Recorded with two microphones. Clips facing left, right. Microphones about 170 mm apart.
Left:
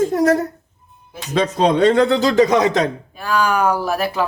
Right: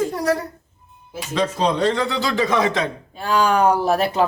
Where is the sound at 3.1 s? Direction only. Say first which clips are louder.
Even; 30° right (ahead or behind).